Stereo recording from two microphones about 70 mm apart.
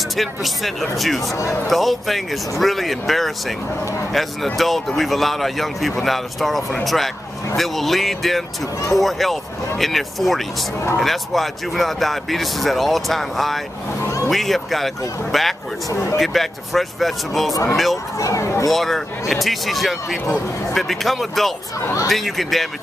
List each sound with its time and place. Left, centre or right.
0.1 s speech: centre
1.2 s speech: left
1.7 s speech: centre
14.0 s vehicle: left
14.3 s speech: centre
15.9 s speech: left
16.2 s speech: centre
18.1 s speech: left
18.7 s speech: centre